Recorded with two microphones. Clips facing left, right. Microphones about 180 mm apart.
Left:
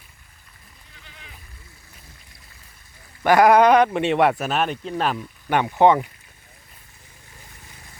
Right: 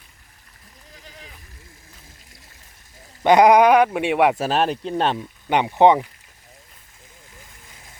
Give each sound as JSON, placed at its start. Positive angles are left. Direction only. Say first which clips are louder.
{"t": 0.9, "sound": "bleat", "louder": "right 5 dB", "side_deg": -35}
{"t": 3.2, "sound": "speech", "louder": "right 1 dB", "side_deg": -20}
{"t": 4.4, "sound": "speech", "louder": "right 3 dB", "side_deg": -30}